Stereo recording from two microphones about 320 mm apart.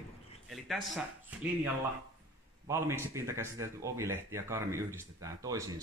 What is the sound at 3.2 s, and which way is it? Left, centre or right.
Speech, centre.